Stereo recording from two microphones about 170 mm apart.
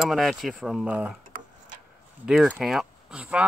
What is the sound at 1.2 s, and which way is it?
Tick-tock, 50° right (ahead or behind).